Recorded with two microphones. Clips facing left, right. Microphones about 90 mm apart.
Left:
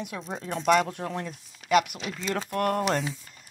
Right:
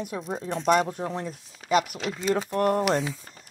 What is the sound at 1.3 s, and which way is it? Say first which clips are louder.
Speech: left 2 dB; 35° right (ahead or behind).